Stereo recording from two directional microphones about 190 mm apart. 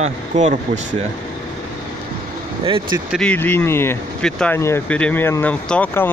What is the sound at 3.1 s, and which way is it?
Speech, 5° left (ahead or behind).